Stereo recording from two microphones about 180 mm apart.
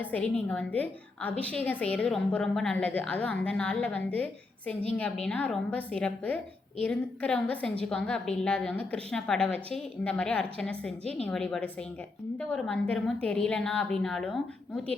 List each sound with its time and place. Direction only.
0.0 s a woman's voice: 10° left (ahead or behind)
11.0 s a woman's voice: 35° right (ahead or behind)
11.3 s a woman's voice: 5° left (ahead or behind)